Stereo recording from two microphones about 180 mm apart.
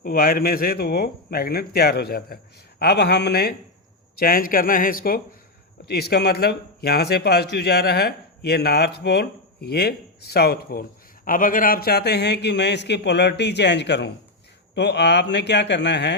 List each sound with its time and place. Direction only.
0.0 s a man's voice: 55° left (ahead or behind)
4.2 s a man's voice: 55° left (ahead or behind); by 16.1 s 75° left (ahead or behind)